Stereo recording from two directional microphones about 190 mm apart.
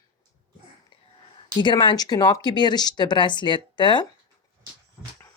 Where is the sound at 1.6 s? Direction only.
25° left (ahead or behind).